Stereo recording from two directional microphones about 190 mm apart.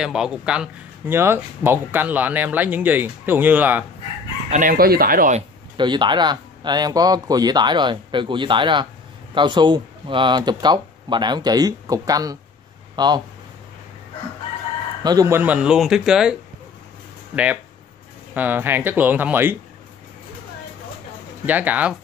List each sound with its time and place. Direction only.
0.0 s speech: 5° right (ahead or behind)
4.5 s speech: 45° right (ahead or behind)
5.8 s speech: 25° right (ahead or behind)
15.0 s speech: 15° right (ahead or behind)
18.3 s speech: 10° right (ahead or behind)
21.5 s speech: 10° right (ahead or behind)